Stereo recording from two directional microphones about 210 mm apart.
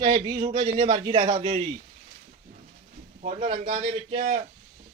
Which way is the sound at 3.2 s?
35° right (ahead or behind).